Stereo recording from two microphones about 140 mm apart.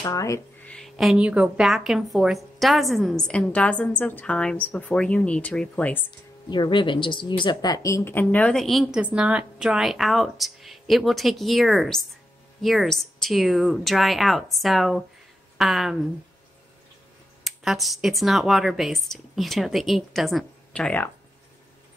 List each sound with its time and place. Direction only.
0.0 s speech: 20° left (ahead or behind)
0.7 s a woman's voice: 5° left (ahead or behind)
6.5 s a woman's voice: 35° left (ahead or behind); by 16.1 s centre (ahead or behind)
17.4 s a woman's voice: centre (ahead or behind)